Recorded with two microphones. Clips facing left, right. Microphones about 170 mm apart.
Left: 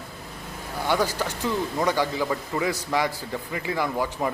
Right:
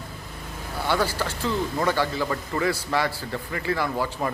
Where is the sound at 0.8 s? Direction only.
15° left (ahead or behind).